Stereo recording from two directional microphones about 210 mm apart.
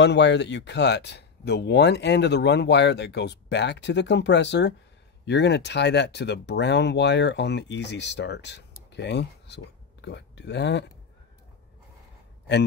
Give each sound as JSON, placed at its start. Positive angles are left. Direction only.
{"t": 0.0, "sound": "speech", "side_deg": 55}